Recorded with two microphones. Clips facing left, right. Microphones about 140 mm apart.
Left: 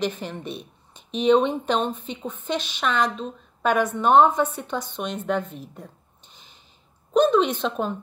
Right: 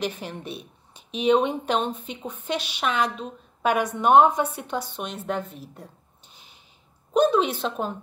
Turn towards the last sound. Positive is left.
turn(degrees=-5)  # may be behind; listen again after turning